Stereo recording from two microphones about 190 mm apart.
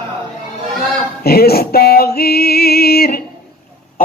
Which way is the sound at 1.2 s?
55° left (ahead or behind).